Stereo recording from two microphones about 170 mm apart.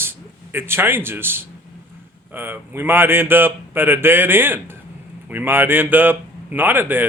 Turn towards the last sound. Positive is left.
turn(degrees=-10)  # may be behind; listen again after turning